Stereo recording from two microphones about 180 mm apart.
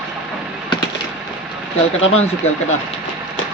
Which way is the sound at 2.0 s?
35° left (ahead or behind).